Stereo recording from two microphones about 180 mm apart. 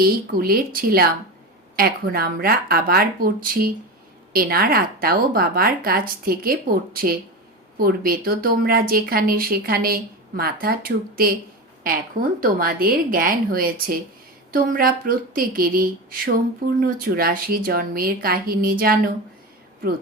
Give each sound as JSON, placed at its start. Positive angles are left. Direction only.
{"t": 0.0, "sound": "a woman's voice", "side_deg": -55}